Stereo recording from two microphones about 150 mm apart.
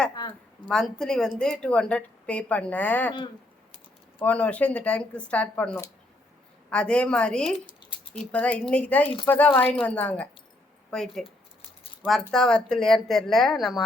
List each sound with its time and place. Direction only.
0.2 s speech: 30° left (ahead or behind)
0.7 s speech: 5° left (ahead or behind)
4.2 s speech: 10° left (ahead or behind)
12.3 s speech: 5° left (ahead or behind)